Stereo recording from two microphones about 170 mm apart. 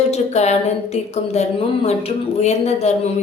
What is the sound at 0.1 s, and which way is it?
A woman's voice, 40° left (ahead or behind).